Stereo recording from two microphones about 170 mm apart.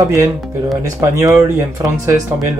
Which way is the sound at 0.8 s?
20° right (ahead or behind).